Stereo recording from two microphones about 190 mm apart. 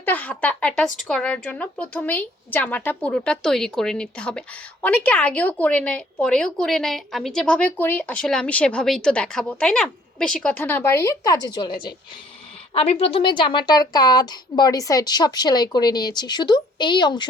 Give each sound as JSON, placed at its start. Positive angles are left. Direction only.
{"t": 0.0, "sound": "a woman's voice", "side_deg": 10}